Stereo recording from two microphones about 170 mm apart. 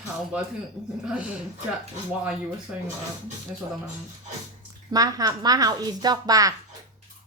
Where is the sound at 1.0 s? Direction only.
5° right (ahead or behind).